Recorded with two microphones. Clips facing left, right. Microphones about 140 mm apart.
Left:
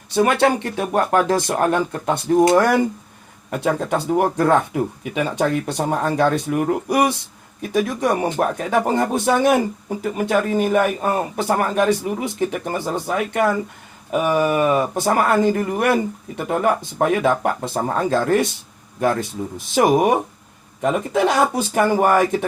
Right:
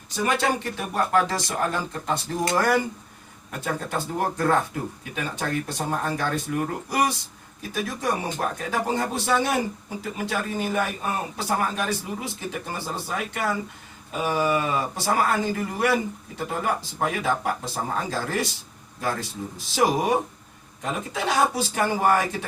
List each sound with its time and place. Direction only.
0.1 s a man's voice: 65° left (ahead or behind)
3.5 s a man's voice: 80° left; by 18.4 s 60° left (ahead or behind)
19.5 s a man's voice: 55° left (ahead or behind)